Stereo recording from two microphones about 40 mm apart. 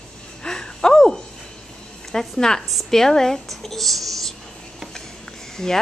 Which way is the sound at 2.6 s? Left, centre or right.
Centre.